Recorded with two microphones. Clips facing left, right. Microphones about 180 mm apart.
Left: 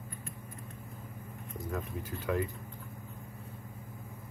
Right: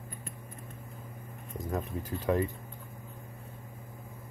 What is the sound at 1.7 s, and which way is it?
Speech, 40° right (ahead or behind).